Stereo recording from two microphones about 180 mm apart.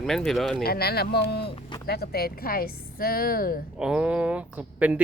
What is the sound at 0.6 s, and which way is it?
Speech, 60° left (ahead or behind).